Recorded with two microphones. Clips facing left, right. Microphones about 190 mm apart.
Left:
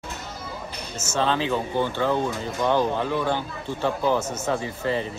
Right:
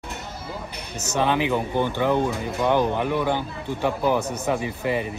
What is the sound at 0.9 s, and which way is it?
Speech, 15° right (ahead or behind).